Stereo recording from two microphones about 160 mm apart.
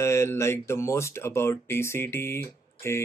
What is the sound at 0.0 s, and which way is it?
Speech, 15° left (ahead or behind).